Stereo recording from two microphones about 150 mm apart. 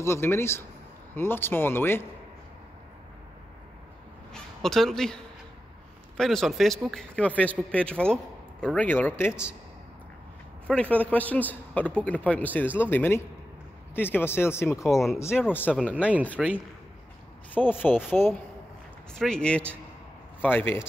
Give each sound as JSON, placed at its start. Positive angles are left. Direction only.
{"t": 0.0, "sound": "a man's voice", "side_deg": 15}
{"t": 4.3, "sound": "a woman's voice", "side_deg": 0}
{"t": 9.3, "sound": "speech", "side_deg": -5}
{"t": 10.7, "sound": "a man's voice", "side_deg": 10}
{"t": 14.9, "sound": "speech", "side_deg": 0}
{"t": 17.6, "sound": "a man's voice", "side_deg": 10}
{"t": 19.1, "sound": "a man's voice", "side_deg": 5}